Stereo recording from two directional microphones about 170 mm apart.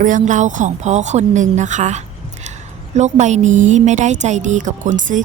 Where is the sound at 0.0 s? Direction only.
50° right (ahead or behind).